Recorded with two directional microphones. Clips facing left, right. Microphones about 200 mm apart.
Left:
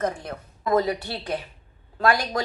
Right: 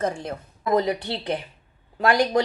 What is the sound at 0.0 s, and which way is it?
A woman's voice, 25° right (ahead or behind).